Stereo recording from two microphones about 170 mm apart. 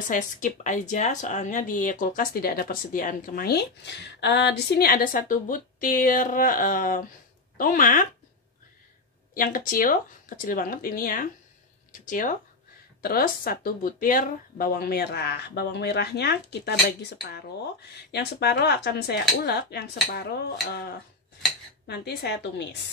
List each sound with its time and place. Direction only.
0.1 s speech: 45° left (ahead or behind)
9.3 s speech: 55° left (ahead or behind)
13.0 s speech: 60° left (ahead or behind)
21.8 s speech: 75° left (ahead or behind); by 22.8 s 90° left